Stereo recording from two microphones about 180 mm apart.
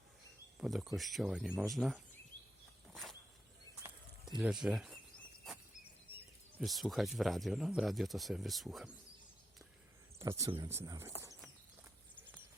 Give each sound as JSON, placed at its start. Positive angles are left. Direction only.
{"t": 0.6, "sound": "speech", "side_deg": 0}
{"t": 2.9, "sound": "a sound", "side_deg": 0}
{"t": 4.4, "sound": "speech", "side_deg": -5}
{"t": 6.1, "sound": "speech", "side_deg": -5}
{"t": 10.2, "sound": "speech", "side_deg": -15}